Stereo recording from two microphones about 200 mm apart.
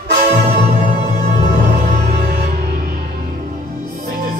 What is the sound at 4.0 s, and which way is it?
Music, 45° right (ahead or behind).